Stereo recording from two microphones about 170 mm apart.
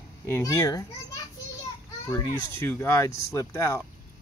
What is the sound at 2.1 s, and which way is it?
Speech, 15° left (ahead or behind).